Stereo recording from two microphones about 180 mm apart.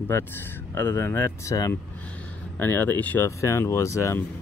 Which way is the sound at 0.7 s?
10° left (ahead or behind).